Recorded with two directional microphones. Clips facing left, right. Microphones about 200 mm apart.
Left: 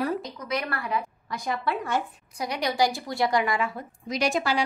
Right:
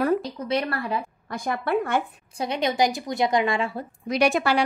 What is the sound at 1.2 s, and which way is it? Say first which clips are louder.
Speech: right 5 dB; 50° right (ahead or behind).